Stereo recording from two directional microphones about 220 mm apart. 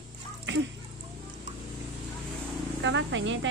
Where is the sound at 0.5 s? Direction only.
55° right (ahead or behind).